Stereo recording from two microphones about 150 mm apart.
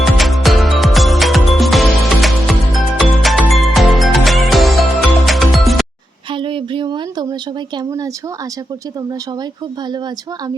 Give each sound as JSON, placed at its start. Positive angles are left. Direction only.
{"t": 0.0, "sound": "music", "side_deg": 0}
{"t": 6.3, "sound": "a sound", "side_deg": -35}
{"t": 7.8, "sound": "speech", "side_deg": -25}